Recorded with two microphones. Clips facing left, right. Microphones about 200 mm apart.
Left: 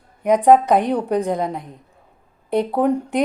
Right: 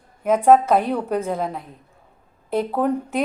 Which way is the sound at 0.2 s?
15° left (ahead or behind).